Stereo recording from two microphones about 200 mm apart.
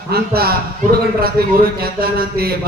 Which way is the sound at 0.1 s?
50° right (ahead or behind).